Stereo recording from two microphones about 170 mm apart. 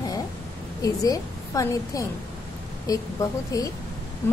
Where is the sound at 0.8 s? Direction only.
20° left (ahead or behind).